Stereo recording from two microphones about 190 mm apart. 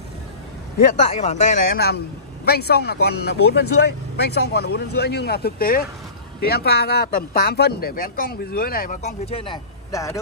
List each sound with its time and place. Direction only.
0.7 s speech: 40° left (ahead or behind)
2.4 s speech: 55° left (ahead or behind); by 9.6 s 30° left (ahead or behind)
9.8 s speech: 15° left (ahead or behind)